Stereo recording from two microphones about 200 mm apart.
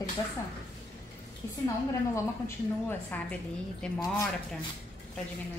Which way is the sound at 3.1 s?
10° left (ahead or behind).